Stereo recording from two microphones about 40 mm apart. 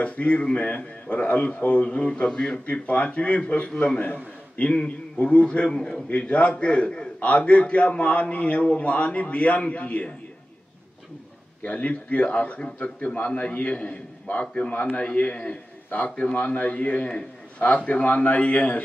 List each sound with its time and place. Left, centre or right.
0.0 s a man's voice: left
2.7 s a man's voice: left
5.8 s a man's voice: centre
6.0 s a man's voice: left
11.6 s a man's voice: left